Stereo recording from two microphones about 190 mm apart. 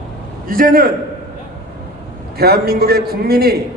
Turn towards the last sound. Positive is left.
turn(degrees=-55)  # may be behind; listen again after turning